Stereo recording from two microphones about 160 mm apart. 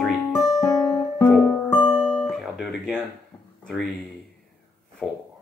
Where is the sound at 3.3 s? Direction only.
20° left (ahead or behind).